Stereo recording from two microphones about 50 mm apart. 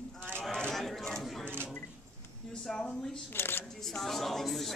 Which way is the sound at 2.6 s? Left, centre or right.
Centre.